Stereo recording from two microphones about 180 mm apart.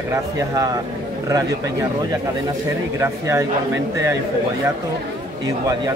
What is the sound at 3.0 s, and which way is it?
Speech, 15° right (ahead or behind).